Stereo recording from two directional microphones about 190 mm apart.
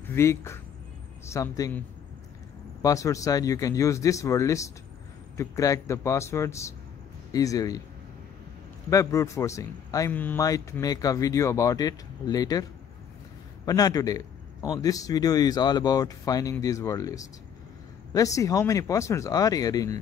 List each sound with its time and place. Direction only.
0.0 s a man's voice: 15° left (ahead or behind)
2.8 s a man's voice: 15° left (ahead or behind)
8.9 s a man's voice: 15° left (ahead or behind)
13.7 s a man's voice: 20° left (ahead or behind)